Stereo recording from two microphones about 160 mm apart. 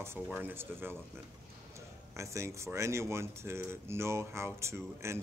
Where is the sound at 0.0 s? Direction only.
15° right (ahead or behind).